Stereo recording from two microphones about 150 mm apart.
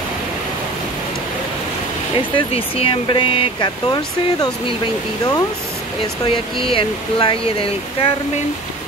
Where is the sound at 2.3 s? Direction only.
35° left (ahead or behind).